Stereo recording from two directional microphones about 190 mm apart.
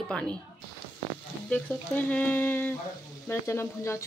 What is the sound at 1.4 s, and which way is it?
Speech, 5° left (ahead or behind).